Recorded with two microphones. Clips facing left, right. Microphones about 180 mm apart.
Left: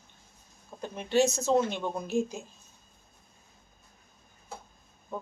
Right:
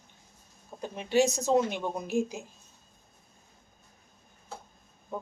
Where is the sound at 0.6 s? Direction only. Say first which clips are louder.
Even; 15° right (ahead or behind).